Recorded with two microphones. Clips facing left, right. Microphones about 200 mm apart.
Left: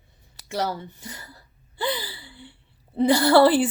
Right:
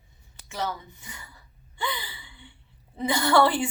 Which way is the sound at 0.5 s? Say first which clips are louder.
Left 5 dB; 35° left (ahead or behind).